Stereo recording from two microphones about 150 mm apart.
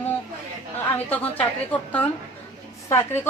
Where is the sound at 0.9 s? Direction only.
10° left (ahead or behind).